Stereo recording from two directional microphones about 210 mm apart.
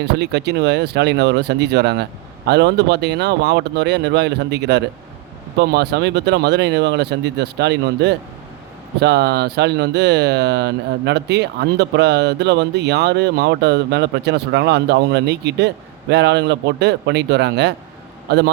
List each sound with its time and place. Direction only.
0.0 s speech: 55° right (ahead or behind)